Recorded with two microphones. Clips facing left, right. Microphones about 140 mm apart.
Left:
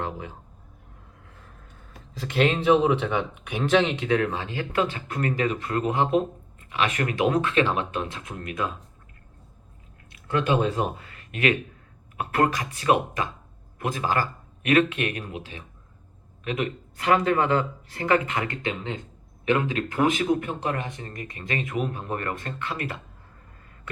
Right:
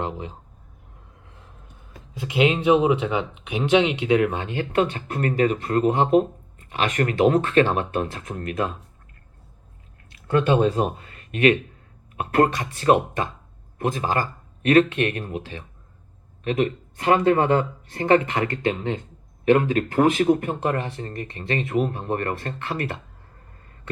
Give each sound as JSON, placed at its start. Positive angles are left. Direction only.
{"t": 0.0, "sound": "speech", "side_deg": -20}
{"t": 2.1, "sound": "speech", "side_deg": -10}
{"t": 4.9, "sound": "speech", "side_deg": -40}
{"t": 10.4, "sound": "speech", "side_deg": -30}
{"t": 13.7, "sound": "speech", "side_deg": -45}
{"t": 14.0, "sound": "speech", "side_deg": -20}
{"t": 14.6, "sound": "speech", "side_deg": -40}
{"t": 17.5, "sound": "speech", "side_deg": -45}
{"t": 18.0, "sound": "speech", "side_deg": -30}
{"t": 18.5, "sound": "speech", "side_deg": -40}
{"t": 20.7, "sound": "speech", "side_deg": -35}